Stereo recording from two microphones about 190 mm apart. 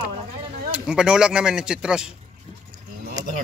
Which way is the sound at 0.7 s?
5° right (ahead or behind).